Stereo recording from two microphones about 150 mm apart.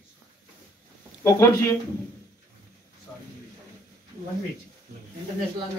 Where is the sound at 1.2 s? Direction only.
20° left (ahead or behind).